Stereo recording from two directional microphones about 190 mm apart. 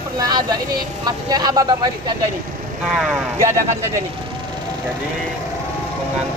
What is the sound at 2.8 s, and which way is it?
Speech, 5° right (ahead or behind).